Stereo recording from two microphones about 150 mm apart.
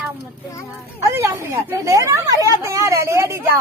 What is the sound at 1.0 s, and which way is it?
Speech, 20° right (ahead or behind).